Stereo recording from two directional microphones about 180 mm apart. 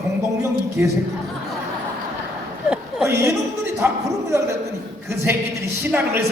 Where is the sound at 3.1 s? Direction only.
15° right (ahead or behind).